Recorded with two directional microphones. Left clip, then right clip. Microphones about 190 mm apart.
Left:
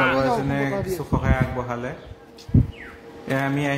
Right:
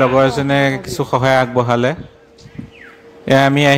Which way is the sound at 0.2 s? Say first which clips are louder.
Right 9 dB; 50° right (ahead or behind).